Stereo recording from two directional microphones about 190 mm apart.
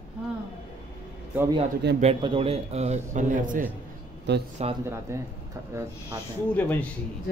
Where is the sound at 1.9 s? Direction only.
30° right (ahead or behind).